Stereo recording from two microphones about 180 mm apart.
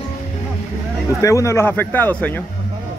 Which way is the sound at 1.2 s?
15° left (ahead or behind).